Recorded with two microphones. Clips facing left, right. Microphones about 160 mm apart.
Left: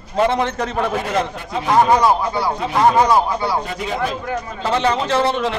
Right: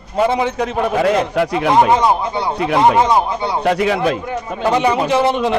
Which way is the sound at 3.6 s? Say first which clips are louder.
Right 8 dB; 75° right (ahead or behind).